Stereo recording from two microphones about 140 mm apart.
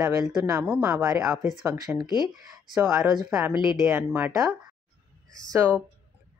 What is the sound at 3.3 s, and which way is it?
A woman's voice, 15° right (ahead or behind).